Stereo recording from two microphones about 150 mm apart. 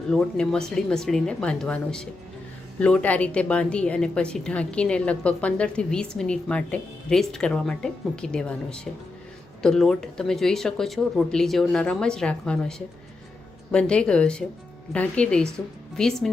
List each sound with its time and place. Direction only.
0.1 s speech: 5° left (ahead or behind)